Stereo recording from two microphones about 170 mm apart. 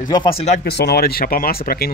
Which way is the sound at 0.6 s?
75° left (ahead or behind).